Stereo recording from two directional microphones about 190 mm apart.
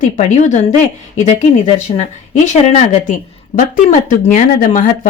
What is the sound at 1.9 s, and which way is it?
A woman's voice, 40° left (ahead or behind).